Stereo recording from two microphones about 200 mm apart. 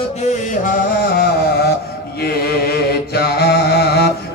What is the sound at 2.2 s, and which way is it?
Mantra, 50° left (ahead or behind).